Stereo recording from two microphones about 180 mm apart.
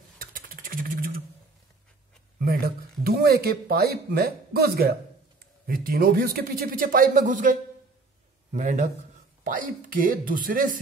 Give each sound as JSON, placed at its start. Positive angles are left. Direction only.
{"t": 0.2, "sound": "beatboxing", "side_deg": -50}
{"t": 2.4, "sound": "a man's voice", "side_deg": -60}